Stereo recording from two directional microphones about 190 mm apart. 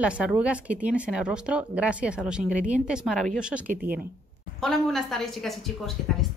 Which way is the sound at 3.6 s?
45° right (ahead or behind).